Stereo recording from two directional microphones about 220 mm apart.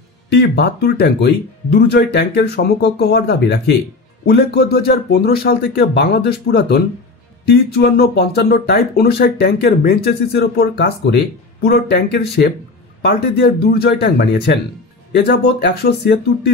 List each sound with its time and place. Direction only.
0.3 s speech: 50° left (ahead or behind)